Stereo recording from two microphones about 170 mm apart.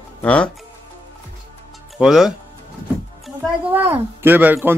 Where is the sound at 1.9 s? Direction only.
Centre (ahead or behind).